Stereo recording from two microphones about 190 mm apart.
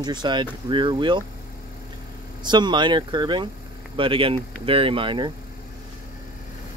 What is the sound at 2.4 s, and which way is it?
Speech, 25° right (ahead or behind).